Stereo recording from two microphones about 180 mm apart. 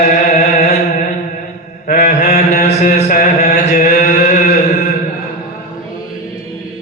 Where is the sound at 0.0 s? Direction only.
40° left (ahead or behind).